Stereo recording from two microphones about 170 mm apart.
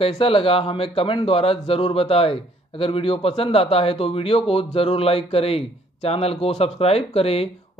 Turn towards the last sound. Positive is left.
turn(degrees=35)  # may be behind; listen again after turning